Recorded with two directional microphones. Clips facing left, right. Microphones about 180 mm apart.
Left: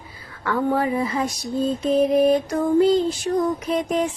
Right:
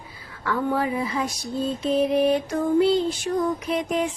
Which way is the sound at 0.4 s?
50° left (ahead or behind).